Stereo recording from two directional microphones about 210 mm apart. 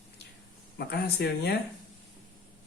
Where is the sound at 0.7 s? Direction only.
50° left (ahead or behind).